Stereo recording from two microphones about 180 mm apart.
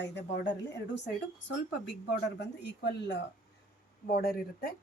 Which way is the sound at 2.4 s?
70° left (ahead or behind).